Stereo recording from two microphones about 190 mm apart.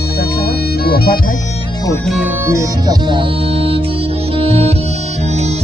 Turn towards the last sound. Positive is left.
turn(degrees=-35)  # may be behind; listen again after turning